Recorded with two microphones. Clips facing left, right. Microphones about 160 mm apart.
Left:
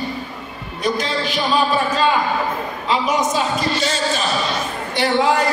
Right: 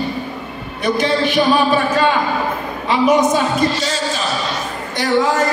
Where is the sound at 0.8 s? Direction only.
60° right (ahead or behind).